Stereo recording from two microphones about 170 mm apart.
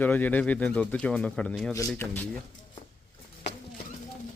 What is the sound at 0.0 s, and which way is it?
Speech, 10° left (ahead or behind).